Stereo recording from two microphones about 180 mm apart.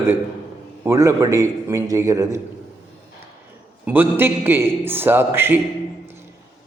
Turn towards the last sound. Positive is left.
turn(degrees=-10)  # may be behind; listen again after turning